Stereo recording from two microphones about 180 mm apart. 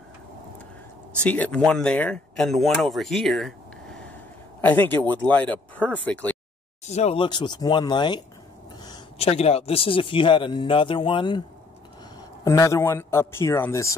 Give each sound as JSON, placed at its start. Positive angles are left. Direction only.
{"t": 1.2, "sound": "a man's voice", "side_deg": 5}
{"t": 6.9, "sound": "speech", "side_deg": 35}
{"t": 7.2, "sound": "speech", "side_deg": 25}
{"t": 9.2, "sound": "speech", "side_deg": 35}
{"t": 12.4, "sound": "speech", "side_deg": 20}